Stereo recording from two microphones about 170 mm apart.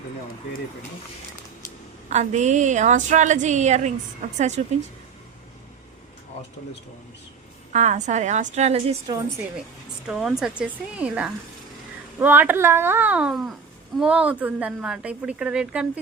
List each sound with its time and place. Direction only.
2.0 s a woman's voice: 45° right (ahead or behind)
7.7 s a woman's voice: 45° right (ahead or behind)
10.1 s speech: centre (ahead or behind)